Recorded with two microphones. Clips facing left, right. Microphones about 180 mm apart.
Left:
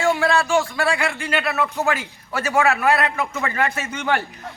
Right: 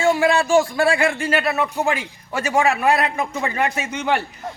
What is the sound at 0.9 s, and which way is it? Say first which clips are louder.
Speech: right 4 dB; 40° right (ahead or behind).